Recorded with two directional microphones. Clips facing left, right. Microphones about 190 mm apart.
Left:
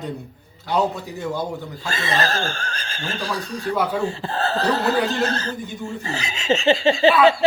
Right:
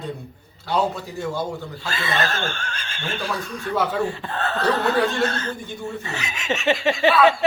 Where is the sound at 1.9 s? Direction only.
35° left (ahead or behind).